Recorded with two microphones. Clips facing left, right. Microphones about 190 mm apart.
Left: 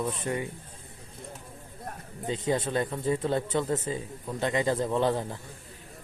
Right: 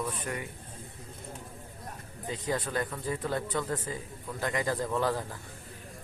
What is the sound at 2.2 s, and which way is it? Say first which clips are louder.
Speech: left 5 dB; 25° left (ahead or behind).